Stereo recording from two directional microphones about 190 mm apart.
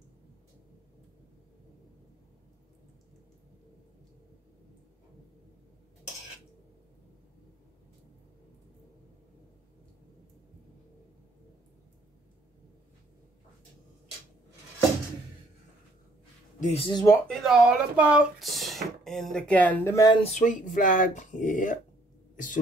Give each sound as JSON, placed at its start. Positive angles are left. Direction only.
{"t": 16.5, "sound": "speech", "side_deg": 40}
{"t": 16.8, "sound": "speech", "side_deg": 20}
{"t": 17.3, "sound": "speech", "side_deg": 0}
{"t": 20.2, "sound": "speech", "side_deg": 40}
{"t": 22.3, "sound": "a sound", "side_deg": 45}